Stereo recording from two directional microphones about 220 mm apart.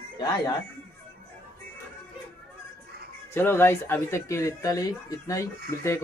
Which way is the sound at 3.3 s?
10° left (ahead or behind).